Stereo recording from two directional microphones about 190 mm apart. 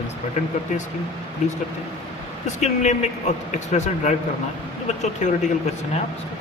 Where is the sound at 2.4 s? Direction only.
40° left (ahead or behind).